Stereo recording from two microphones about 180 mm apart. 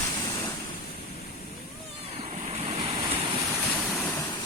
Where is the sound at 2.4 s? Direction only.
35° right (ahead or behind).